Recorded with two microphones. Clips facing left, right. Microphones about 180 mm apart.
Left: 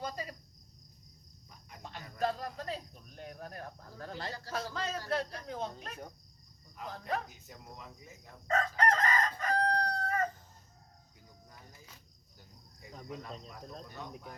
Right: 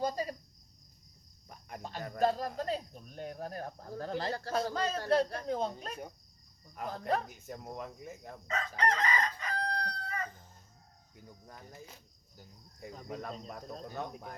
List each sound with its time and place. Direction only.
0.0 s cricket: 35° right (ahead or behind)
1.8 s cricket: 35° right (ahead or behind)
2.2 s speech: 35° right (ahead or behind)
4.3 s speech: 55° right (ahead or behind)
4.5 s speech: 35° right (ahead or behind)
6.7 s speech: 50° right (ahead or behind)
8.4 s chicken: 45° left (ahead or behind)
13.1 s speech: 50° right (ahead or behind)